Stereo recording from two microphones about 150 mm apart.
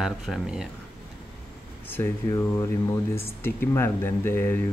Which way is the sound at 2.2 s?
20° left (ahead or behind).